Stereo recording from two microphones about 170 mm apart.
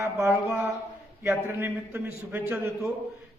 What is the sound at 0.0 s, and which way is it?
A man's voice, 15° right (ahead or behind).